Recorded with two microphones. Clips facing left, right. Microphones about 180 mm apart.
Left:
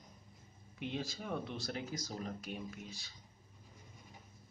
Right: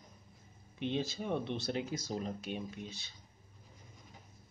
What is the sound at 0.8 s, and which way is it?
Speech, 25° right (ahead or behind).